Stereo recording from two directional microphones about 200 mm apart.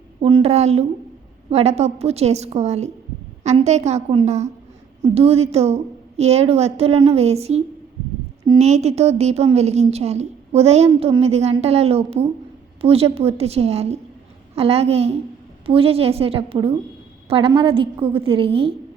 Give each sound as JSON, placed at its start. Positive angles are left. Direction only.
{"t": 0.2, "sound": "a woman's voice", "side_deg": -30}